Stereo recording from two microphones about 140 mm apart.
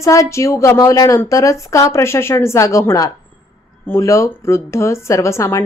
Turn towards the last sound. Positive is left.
turn(degrees=20)  # may be behind; listen again after turning